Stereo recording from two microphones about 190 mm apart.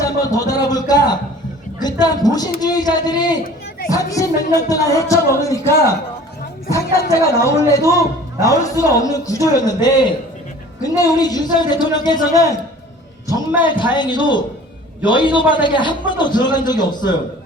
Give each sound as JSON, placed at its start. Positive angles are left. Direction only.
{"t": 0.0, "sound": "a sound", "side_deg": 20}
{"t": 0.7, "sound": "a man's voice", "side_deg": 20}
{"t": 7.9, "sound": "a man's voice", "side_deg": -15}
{"t": 8.6, "sound": "a man's voice", "side_deg": 15}
{"t": 13.7, "sound": "a man's voice", "side_deg": 25}